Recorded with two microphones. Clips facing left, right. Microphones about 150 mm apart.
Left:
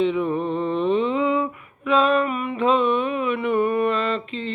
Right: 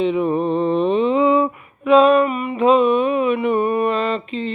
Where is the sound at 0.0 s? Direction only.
20° right (ahead or behind).